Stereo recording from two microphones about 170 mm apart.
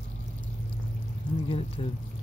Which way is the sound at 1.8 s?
30° left (ahead or behind).